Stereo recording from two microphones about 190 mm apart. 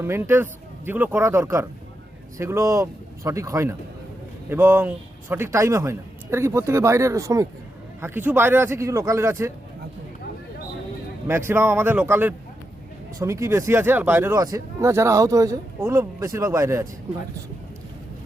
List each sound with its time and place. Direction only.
0.0 s speech: 10° right (ahead or behind)
11.3 s speech: 10° right (ahead or behind)